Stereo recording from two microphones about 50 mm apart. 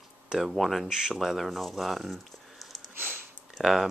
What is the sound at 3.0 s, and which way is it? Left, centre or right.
Sniff, right.